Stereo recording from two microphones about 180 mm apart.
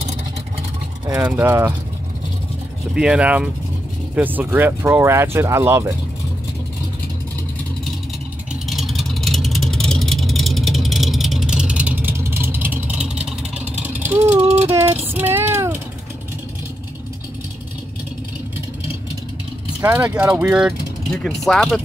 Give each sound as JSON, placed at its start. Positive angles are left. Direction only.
{"t": 1.0, "sound": "speech", "side_deg": -10}
{"t": 2.9, "sound": "speech", "side_deg": -5}
{"t": 8.6, "sound": "vehicle", "side_deg": 0}
{"t": 14.1, "sound": "a sound", "side_deg": -10}
{"t": 14.4, "sound": "music", "side_deg": -40}
{"t": 14.7, "sound": "child singing", "side_deg": -10}
{"t": 19.8, "sound": "speech", "side_deg": -10}